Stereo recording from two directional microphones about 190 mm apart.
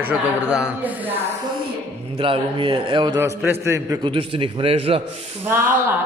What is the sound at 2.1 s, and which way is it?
A man's voice, 30° right (ahead or behind).